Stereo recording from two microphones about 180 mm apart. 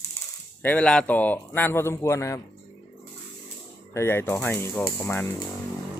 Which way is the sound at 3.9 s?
15° left (ahead or behind).